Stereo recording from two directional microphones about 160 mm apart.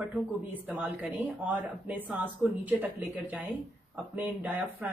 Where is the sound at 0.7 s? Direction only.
10° right (ahead or behind).